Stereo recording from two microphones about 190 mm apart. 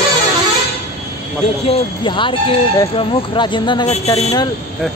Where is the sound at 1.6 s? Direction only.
25° left (ahead or behind).